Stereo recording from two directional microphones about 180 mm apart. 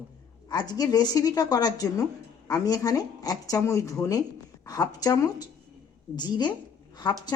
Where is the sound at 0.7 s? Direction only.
20° left (ahead or behind).